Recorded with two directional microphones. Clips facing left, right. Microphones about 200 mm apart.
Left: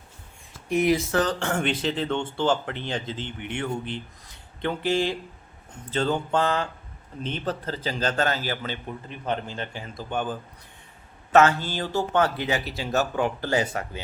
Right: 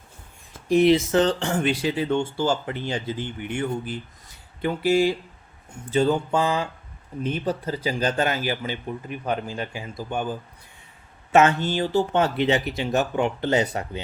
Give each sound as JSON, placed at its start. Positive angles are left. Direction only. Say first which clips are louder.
{"t": 0.7, "sound": "speech", "louder": "right 5 dB", "side_deg": -30}
{"t": 1.4, "sound": "a man's voice", "louder": "right 2 dB", "side_deg": -10}